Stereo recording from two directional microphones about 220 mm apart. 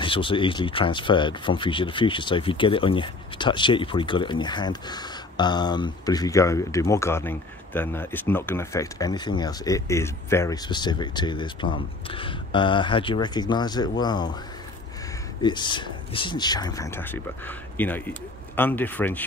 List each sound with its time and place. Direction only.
0.0 s speech: 25° left (ahead or behind)
15.4 s speech: 20° left (ahead or behind)